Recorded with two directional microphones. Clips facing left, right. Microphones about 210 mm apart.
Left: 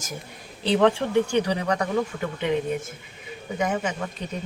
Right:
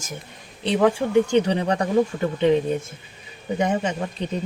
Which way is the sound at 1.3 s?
25° right (ahead or behind).